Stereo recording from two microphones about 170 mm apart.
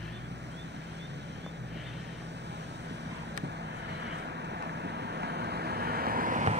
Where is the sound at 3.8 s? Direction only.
90° right.